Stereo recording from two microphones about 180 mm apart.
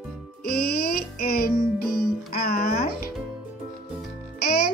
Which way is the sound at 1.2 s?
55° left (ahead or behind).